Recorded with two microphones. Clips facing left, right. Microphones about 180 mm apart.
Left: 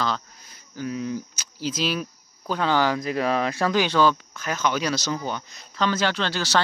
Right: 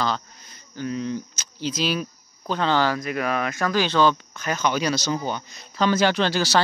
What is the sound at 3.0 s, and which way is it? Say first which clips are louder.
Speech: left 2 dB; 30° left (ahead or behind).